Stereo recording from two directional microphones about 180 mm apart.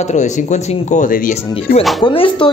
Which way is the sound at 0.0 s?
40° left (ahead or behind).